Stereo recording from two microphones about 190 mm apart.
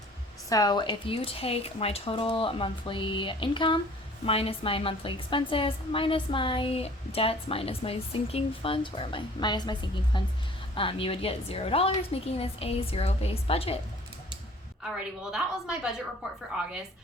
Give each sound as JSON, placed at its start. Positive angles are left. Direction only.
{"t": 0.5, "sound": "a woman's voice", "side_deg": 20}
{"t": 14.9, "sound": "a woman's voice", "side_deg": -5}